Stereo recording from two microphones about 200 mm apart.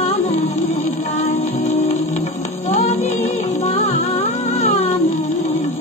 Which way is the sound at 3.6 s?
35° left (ahead or behind).